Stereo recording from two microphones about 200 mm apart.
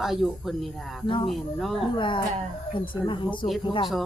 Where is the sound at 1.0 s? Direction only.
25° left (ahead or behind).